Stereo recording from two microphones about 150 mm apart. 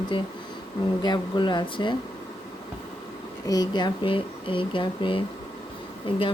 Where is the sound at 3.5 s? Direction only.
25° left (ahead or behind).